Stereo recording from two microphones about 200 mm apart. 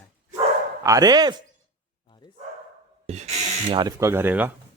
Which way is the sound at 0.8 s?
15° right (ahead or behind).